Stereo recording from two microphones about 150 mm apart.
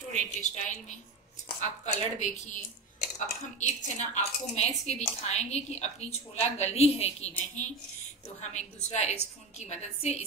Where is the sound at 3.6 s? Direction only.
50° left (ahead or behind).